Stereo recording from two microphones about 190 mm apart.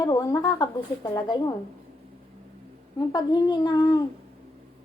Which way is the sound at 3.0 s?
20° left (ahead or behind).